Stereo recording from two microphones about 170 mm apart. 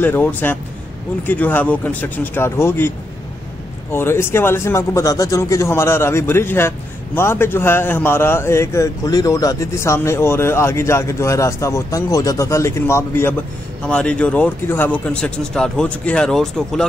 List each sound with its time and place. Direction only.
0.0 s a man's voice: 10° left (ahead or behind)
3.9 s a man's voice: 15° left (ahead or behind)